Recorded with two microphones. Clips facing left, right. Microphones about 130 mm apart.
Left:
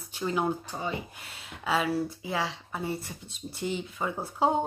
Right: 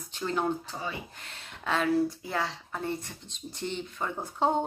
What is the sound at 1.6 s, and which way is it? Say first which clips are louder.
Speech: right 2 dB; 5° left (ahead or behind).